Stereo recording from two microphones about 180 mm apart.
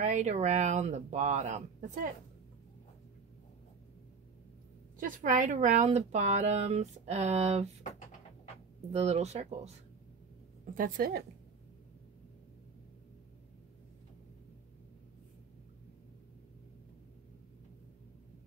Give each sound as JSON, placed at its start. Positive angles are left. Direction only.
{"t": 0.0, "sound": "speech", "side_deg": -40}
{"t": 5.0, "sound": "speech", "side_deg": -50}
{"t": 8.9, "sound": "speech", "side_deg": -35}
{"t": 10.7, "sound": "a woman's voice", "side_deg": -50}